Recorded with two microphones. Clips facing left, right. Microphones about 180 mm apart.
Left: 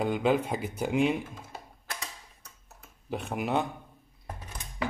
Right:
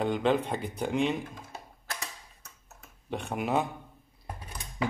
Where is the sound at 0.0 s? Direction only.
5° left (ahead or behind).